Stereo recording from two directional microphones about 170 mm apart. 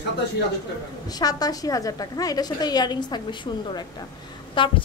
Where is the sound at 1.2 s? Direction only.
20° left (ahead or behind).